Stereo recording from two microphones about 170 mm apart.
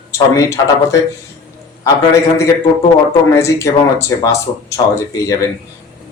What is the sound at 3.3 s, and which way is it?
Speech, 15° left (ahead or behind).